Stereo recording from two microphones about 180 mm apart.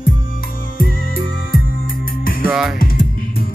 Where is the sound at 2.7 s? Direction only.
55° left (ahead or behind).